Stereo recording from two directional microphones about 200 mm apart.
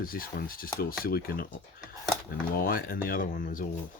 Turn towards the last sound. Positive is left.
turn(degrees=45)  # may be behind; listen again after turning